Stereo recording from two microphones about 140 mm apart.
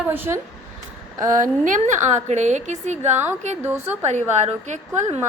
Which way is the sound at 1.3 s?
65° right (ahead or behind).